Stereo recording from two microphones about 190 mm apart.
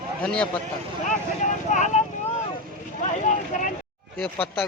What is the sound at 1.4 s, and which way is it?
Speech, 40° left (ahead or behind).